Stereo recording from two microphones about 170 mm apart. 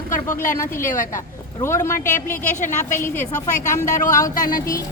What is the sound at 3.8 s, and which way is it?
Speech, 45° left (ahead or behind).